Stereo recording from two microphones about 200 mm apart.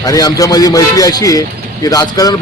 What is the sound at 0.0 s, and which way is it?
Speech, 15° left (ahead or behind).